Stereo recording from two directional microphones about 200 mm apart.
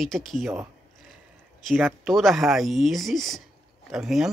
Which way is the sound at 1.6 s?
Centre (ahead or behind).